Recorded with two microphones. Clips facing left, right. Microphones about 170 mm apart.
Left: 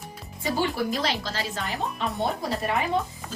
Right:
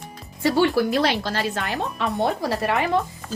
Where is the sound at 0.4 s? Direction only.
75° right (ahead or behind).